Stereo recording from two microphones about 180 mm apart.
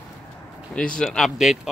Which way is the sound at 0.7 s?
5° left (ahead or behind).